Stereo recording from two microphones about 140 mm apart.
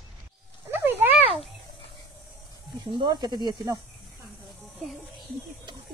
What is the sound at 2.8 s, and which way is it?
Speech, 30° right (ahead or behind).